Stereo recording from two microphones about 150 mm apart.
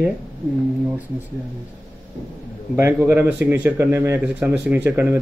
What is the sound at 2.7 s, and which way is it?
Speech, 15° right (ahead or behind).